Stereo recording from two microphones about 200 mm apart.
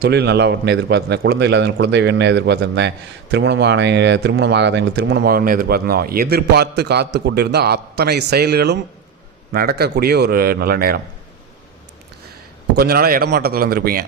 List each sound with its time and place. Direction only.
0.0 s a man's voice: 55° right (ahead or behind)
12.7 s a man's voice: 50° right (ahead or behind)